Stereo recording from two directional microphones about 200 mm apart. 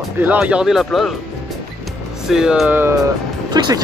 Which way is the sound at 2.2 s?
Centre (ahead or behind).